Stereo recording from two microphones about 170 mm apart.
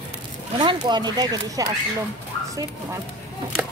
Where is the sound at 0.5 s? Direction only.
25° right (ahead or behind).